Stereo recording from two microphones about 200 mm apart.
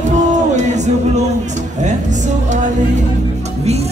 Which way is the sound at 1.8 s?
35° right (ahead or behind).